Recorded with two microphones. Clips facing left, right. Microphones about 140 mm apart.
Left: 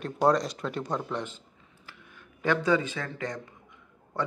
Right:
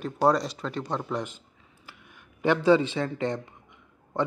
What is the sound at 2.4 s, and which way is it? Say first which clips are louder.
Speech: right 5 dB; 25° right (ahead or behind).